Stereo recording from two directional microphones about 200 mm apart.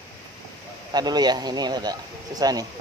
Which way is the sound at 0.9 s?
20° right (ahead or behind).